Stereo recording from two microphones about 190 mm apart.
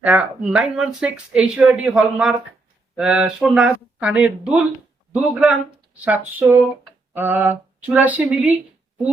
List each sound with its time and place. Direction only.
0.0 s speech: 5° right (ahead or behind)